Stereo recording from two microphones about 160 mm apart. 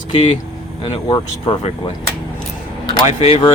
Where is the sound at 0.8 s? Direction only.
25° left (ahead or behind).